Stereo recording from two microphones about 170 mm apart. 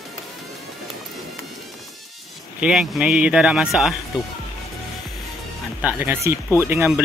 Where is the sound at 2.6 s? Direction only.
5° right (ahead or behind).